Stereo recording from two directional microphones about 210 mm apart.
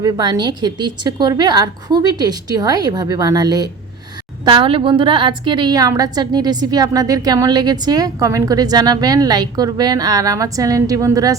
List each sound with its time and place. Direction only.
0.0 s a woman's voice: 20° right (ahead or behind)